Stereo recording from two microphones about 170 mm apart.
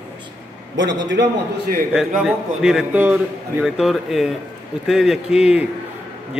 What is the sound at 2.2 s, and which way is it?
A man's voice, 5° right (ahead or behind).